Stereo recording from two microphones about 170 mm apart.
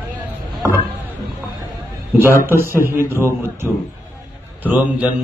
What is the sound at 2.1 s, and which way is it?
Speech, 15° right (ahead or behind).